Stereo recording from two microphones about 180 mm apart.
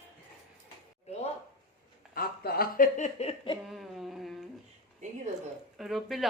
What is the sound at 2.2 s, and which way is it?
Speech, 55° left (ahead or behind).